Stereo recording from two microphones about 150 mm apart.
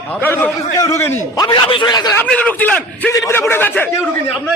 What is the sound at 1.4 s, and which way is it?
Speech, 35° left (ahead or behind).